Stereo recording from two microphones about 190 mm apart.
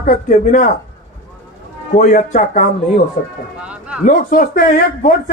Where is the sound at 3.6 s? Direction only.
5° right (ahead or behind).